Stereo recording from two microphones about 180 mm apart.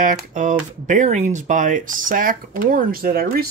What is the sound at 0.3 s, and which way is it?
Speech, 45° right (ahead or behind).